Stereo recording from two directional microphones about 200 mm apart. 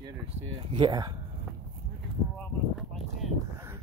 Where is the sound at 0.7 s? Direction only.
20° right (ahead or behind).